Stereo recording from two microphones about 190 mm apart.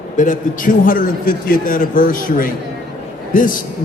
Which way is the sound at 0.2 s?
45° left (ahead or behind).